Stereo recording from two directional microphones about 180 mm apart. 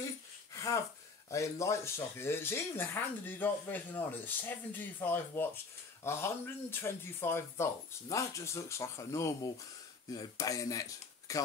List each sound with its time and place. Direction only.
0.6 s gasp: 15° left (ahead or behind)
1.3 s speech: 15° left (ahead or behind)